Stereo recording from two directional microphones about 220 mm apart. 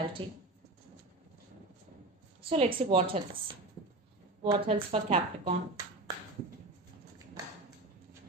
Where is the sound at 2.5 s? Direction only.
25° right (ahead or behind).